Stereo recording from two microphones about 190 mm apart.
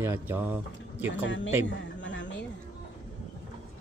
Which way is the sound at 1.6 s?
75° left (ahead or behind).